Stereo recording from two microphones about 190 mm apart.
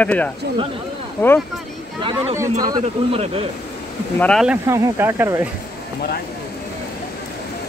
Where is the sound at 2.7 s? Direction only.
30° right (ahead or behind).